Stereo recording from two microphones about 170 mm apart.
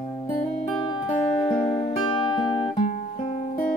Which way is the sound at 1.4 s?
25° left (ahead or behind).